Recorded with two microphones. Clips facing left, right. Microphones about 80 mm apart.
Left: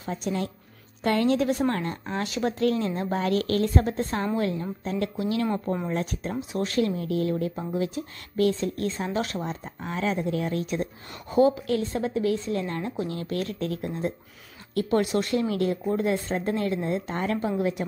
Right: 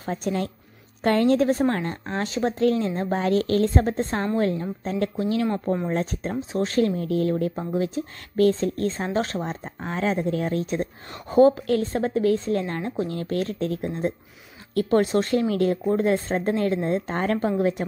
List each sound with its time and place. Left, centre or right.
0.0 s a woman's voice: right
5.5 s speech: centre
5.9 s speech: right